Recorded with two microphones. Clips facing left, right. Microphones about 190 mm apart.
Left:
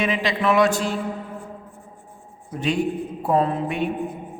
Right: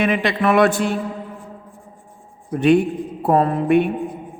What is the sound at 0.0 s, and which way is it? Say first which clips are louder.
Speech: right 4 dB; 60° right (ahead or behind).